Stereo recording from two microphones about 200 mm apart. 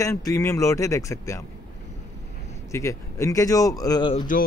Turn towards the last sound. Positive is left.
turn(degrees=25)  # may be behind; listen again after turning